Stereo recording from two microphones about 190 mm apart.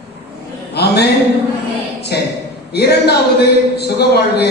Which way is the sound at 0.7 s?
60° left (ahead or behind).